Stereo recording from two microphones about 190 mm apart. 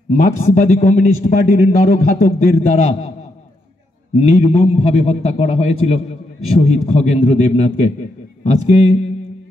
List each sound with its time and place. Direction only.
0.1 s a man's voice: 40° left (ahead or behind)
4.1 s a man's voice: 35° left (ahead or behind)